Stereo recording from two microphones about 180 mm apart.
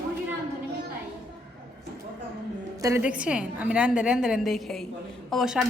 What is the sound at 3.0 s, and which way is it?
A woman's voice, 5° right (ahead or behind).